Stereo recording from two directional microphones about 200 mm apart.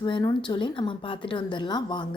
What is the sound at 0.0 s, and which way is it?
A woman's voice, 20° left (ahead or behind).